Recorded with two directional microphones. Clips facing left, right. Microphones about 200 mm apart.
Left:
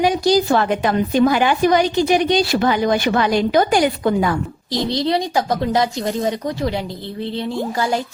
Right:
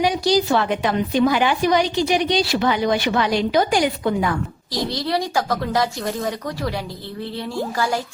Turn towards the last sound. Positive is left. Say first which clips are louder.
# left 2 dB
turn(degrees=20)  # may be behind; listen again after turning